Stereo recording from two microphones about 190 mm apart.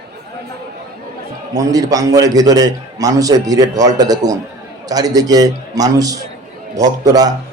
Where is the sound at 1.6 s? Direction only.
20° right (ahead or behind).